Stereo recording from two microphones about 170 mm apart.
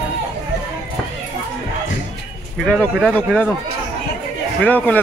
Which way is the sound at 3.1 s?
10° left (ahead or behind).